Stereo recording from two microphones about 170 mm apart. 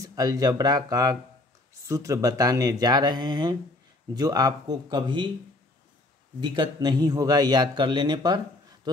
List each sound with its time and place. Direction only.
0.0 s a man's voice: 20° right (ahead or behind)
6.4 s a man's voice: 25° right (ahead or behind)